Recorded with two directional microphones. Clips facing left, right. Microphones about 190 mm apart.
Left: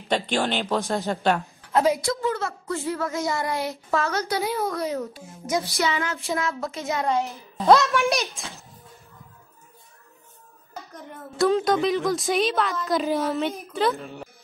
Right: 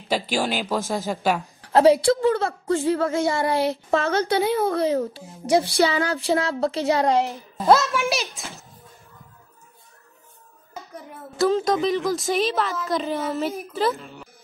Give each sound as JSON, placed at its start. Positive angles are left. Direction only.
{"t": 0.1, "sound": "a woman's voice", "side_deg": -5}
{"t": 1.6, "sound": "a woman's voice", "side_deg": -30}
{"t": 7.5, "sound": "a woman's voice", "side_deg": -5}
{"t": 10.9, "sound": "a woman's voice", "side_deg": -5}